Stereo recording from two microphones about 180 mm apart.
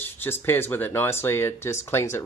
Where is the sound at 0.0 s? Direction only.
10° left (ahead or behind).